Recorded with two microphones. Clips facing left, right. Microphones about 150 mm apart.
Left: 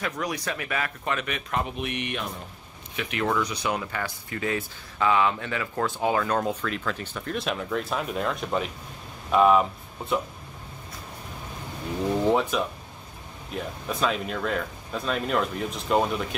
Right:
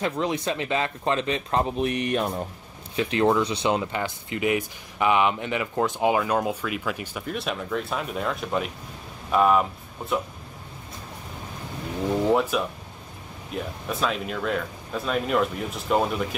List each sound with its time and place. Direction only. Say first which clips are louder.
0.0 s speech: right 4 dB; 25° right (ahead or behind); by 10.2 s centre (ahead or behind)
12.3 s speech: right 1 dB; 5° right (ahead or behind)
13.9 s speech: even; centre (ahead or behind)